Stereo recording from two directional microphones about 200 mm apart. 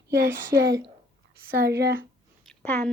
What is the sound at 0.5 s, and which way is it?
Speech, 15° right (ahead or behind).